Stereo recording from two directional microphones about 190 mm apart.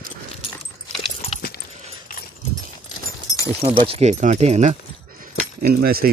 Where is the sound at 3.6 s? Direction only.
30° right (ahead or behind).